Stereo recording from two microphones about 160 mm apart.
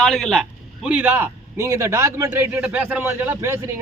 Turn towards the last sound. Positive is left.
turn(degrees=-15)  # may be behind; listen again after turning